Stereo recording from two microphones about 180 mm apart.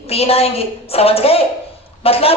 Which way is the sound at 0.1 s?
35° left (ahead or behind).